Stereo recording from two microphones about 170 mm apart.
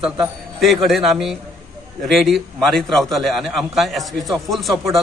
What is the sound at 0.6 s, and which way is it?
A man's voice, centre (ahead or behind).